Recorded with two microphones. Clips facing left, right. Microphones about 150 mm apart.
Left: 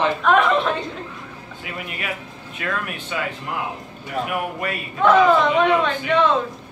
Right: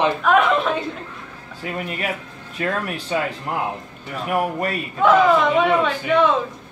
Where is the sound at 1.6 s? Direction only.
35° right (ahead or behind).